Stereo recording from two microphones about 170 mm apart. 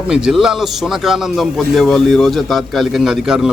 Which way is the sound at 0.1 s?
5° right (ahead or behind).